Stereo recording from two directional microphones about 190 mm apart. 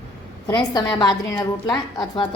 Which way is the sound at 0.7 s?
25° left (ahead or behind).